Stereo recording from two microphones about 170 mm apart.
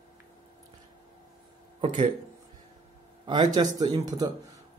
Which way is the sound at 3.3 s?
25° right (ahead or behind).